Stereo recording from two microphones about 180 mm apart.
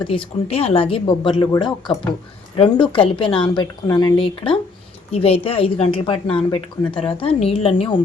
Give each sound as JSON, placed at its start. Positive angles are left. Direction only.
{"t": 0.0, "sound": "speech", "side_deg": 30}